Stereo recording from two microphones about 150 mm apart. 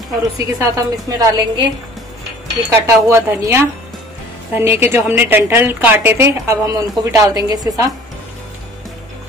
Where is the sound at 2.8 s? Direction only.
20° right (ahead or behind).